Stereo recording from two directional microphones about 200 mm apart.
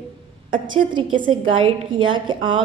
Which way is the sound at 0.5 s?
25° right (ahead or behind).